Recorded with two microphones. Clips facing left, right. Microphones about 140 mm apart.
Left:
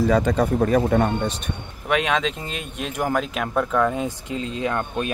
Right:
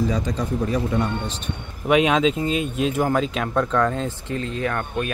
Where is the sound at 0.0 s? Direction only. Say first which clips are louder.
Left 5 dB; 60° left (ahead or behind).